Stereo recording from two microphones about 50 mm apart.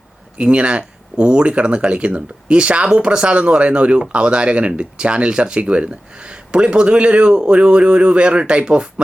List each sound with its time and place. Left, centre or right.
0.3 s speech: right